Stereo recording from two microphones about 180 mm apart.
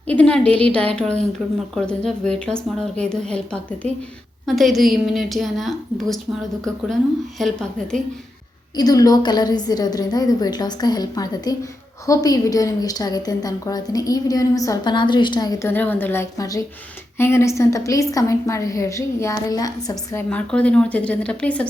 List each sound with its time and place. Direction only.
0.1 s a woman's voice: 5° left (ahead or behind)
8.7 s a woman's voice: 20° left (ahead or behind)
20.3 s a woman's voice: 5° left (ahead or behind)